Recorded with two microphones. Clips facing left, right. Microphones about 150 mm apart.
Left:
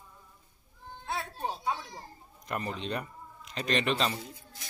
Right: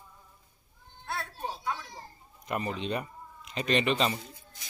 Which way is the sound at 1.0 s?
15° left (ahead or behind).